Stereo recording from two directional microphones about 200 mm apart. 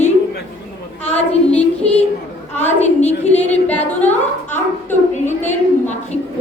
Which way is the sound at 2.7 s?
35° left (ahead or behind).